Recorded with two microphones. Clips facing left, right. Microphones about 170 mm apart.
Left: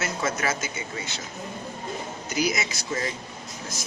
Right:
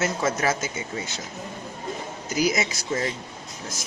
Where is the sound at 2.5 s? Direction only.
30° right (ahead or behind).